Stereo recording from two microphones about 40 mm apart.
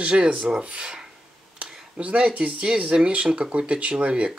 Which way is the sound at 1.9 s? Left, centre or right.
Right.